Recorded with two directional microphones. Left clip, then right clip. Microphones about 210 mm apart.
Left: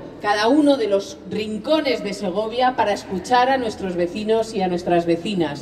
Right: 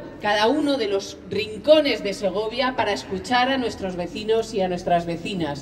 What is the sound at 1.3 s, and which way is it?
A woman's voice, 10° right (ahead or behind).